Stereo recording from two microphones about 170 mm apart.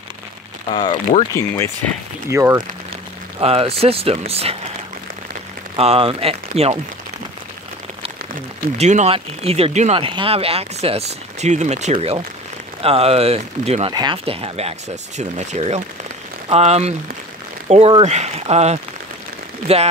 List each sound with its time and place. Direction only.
0.7 s speech: 25° left (ahead or behind)
1.3 s speech: 15° left (ahead or behind)
2.3 s speech: 15° right (ahead or behind)
3.3 s speech: 35° right (ahead or behind)
5.8 s speech: 35° right (ahead or behind)
8.7 s speech: 40° right (ahead or behind)